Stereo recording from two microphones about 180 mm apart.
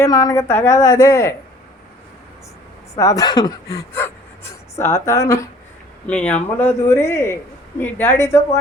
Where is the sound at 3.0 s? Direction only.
20° left (ahead or behind).